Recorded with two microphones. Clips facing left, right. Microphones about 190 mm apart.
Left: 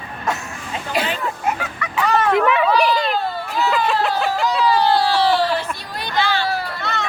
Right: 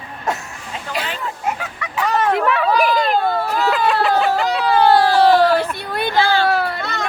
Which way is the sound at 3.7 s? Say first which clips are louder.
Right 2 dB; centre (ahead or behind).